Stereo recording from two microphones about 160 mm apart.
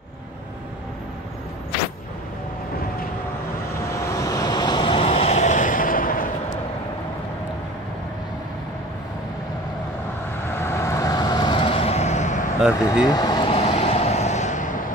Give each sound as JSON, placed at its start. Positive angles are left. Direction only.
{"t": 3.9, "sound": "vehicle", "side_deg": 20}
{"t": 10.5, "sound": "vehicle", "side_deg": 15}
{"t": 13.0, "sound": "vehicle", "side_deg": 25}